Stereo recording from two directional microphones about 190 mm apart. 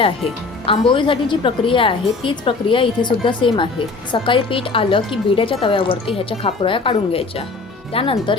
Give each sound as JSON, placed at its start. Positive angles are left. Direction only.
{"t": 0.6, "sound": "a woman's voice", "side_deg": 25}